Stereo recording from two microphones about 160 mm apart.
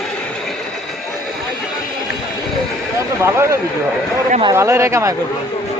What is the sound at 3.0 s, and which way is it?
Speech, 15° right (ahead or behind).